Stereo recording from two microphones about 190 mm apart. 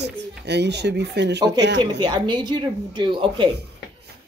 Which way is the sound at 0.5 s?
65° right (ahead or behind).